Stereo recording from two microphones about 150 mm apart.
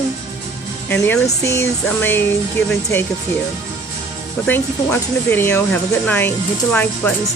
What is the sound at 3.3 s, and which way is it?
Speech, 15° left (ahead or behind).